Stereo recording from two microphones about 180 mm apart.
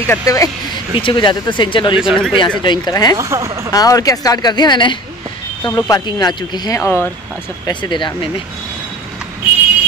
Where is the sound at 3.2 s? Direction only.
15° right (ahead or behind).